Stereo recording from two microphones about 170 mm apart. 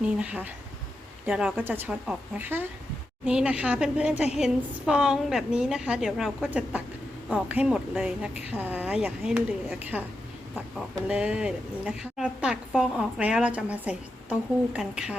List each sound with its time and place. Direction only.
0.0 s speech: 5° right (ahead or behind)
4.1 s a woman's voice: 40° left (ahead or behind)
4.4 s speech: 5° right (ahead or behind)